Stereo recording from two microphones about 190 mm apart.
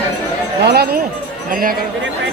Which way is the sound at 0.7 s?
55° right (ahead or behind).